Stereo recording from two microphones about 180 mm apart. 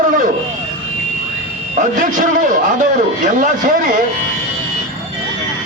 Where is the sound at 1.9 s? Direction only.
45° right (ahead or behind).